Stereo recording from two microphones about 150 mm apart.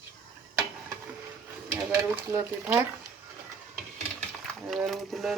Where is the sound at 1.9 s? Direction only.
20° right (ahead or behind).